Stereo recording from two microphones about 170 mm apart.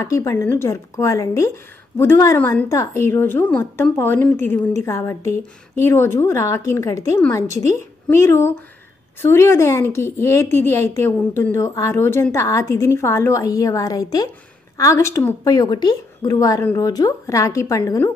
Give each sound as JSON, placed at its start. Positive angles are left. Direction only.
{"t": 0.0, "sound": "a woman's voice", "side_deg": 20}